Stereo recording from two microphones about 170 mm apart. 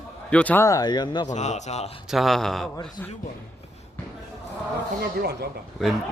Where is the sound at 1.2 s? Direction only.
45° left (ahead or behind).